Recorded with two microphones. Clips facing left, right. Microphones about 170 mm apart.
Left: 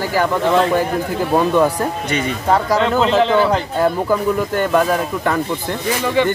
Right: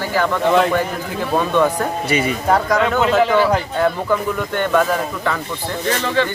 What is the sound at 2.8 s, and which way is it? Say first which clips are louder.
Speech: left 1 dB; 30° left (ahead or behind).